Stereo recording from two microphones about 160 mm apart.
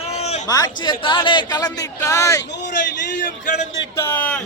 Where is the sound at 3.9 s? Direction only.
10° left (ahead or behind).